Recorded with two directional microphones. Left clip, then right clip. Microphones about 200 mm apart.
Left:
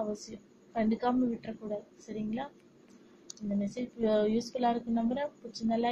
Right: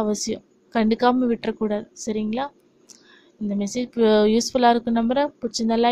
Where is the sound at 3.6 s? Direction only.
45° right (ahead or behind).